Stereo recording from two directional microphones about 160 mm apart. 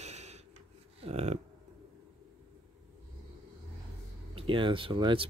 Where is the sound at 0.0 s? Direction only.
45° right (ahead or behind).